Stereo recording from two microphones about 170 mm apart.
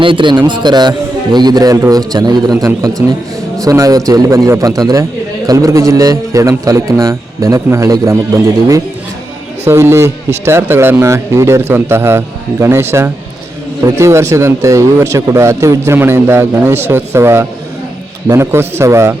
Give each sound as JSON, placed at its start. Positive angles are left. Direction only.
{"t": 0.0, "sound": "a man's voice", "side_deg": -30}
{"t": 9.6, "sound": "speech", "side_deg": -15}